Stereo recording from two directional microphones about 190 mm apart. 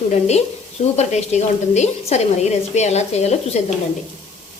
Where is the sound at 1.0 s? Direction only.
35° left (ahead or behind).